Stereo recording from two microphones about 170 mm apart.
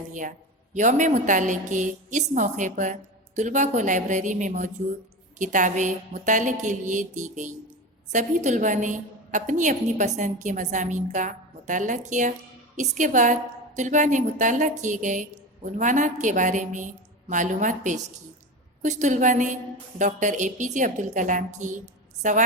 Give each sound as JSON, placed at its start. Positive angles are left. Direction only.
{"t": 0.1, "sound": "a woman's voice", "side_deg": -50}